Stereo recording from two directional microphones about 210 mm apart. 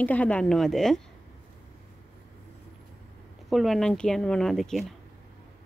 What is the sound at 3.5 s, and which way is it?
Speech, centre (ahead or behind).